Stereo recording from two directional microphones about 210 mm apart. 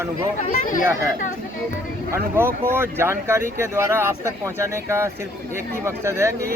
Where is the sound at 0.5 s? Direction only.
40° left (ahead or behind).